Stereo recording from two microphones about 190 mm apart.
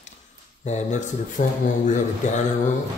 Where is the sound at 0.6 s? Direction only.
40° left (ahead or behind).